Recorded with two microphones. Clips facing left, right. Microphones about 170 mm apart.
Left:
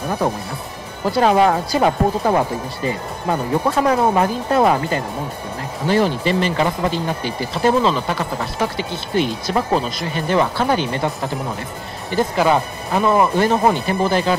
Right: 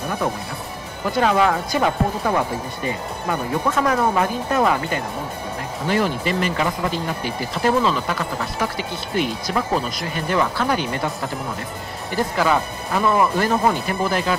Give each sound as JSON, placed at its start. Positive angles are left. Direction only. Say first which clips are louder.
{"t": 1.1, "sound": "speech", "louder": "left 3 dB", "side_deg": 35}
{"t": 12.2, "sound": "speech", "louder": "left 3 dB", "side_deg": 25}